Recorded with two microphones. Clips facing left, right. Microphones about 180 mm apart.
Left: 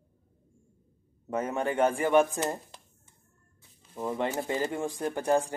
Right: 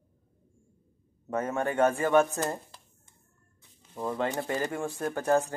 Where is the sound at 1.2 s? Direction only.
15° left (ahead or behind).